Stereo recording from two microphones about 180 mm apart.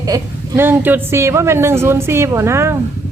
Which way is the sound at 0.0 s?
15° right (ahead or behind).